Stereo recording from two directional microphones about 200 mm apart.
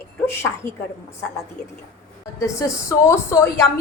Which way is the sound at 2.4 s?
15° left (ahead or behind).